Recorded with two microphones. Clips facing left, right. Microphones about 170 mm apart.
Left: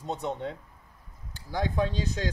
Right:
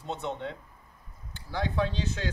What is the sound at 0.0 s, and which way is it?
Speech, 40° left (ahead or behind).